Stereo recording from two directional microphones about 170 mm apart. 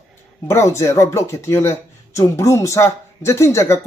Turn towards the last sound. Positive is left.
turn(degrees=15)  # may be behind; listen again after turning